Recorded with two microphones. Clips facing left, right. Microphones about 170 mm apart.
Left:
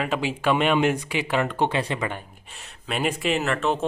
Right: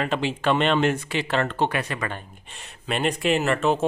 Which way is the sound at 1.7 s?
25° left (ahead or behind).